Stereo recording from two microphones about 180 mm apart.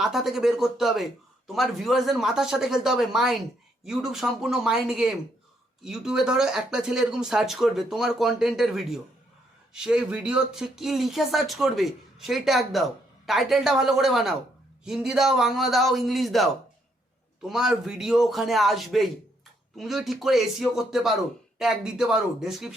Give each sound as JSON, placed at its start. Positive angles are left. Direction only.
{"t": 0.0, "sound": "speech", "side_deg": 0}